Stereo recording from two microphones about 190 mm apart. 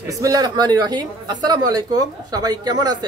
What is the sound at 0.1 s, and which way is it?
Speech, 20° right (ahead or behind).